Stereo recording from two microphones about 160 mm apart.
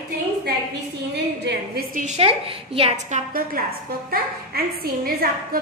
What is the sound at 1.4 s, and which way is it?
Speech, 65° right (ahead or behind).